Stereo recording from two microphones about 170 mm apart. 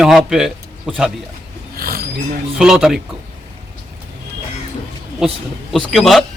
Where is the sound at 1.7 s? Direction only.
65° right (ahead or behind).